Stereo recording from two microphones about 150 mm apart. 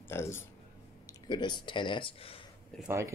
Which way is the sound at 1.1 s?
30° left (ahead or behind).